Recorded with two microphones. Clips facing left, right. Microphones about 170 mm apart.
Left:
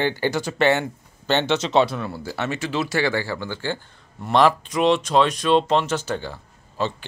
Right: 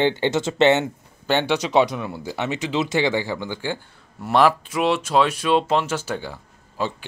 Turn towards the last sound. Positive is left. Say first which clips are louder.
# left 1 dB
turn(degrees=-10)  # may be behind; listen again after turning